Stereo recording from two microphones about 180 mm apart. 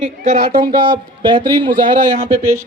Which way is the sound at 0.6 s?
25° right (ahead or behind).